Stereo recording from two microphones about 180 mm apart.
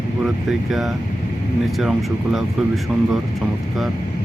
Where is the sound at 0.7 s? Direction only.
Centre (ahead or behind).